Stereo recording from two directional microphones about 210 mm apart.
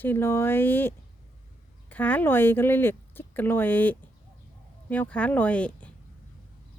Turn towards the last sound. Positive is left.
turn(degrees=5)  # may be behind; listen again after turning